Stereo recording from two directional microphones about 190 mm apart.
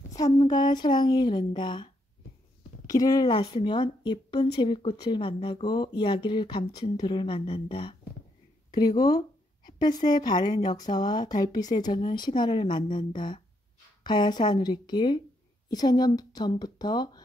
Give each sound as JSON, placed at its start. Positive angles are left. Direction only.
{"t": 0.1, "sound": "speech", "side_deg": 20}
{"t": 2.9, "sound": "speech", "side_deg": 20}